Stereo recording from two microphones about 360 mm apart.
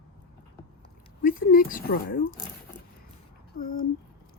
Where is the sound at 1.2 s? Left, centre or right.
Left.